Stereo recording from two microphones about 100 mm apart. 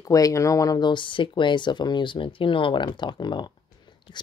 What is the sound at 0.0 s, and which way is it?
Speech, 35° left (ahead or behind).